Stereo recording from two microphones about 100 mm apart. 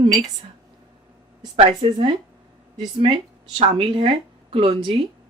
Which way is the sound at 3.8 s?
60° right (ahead or behind).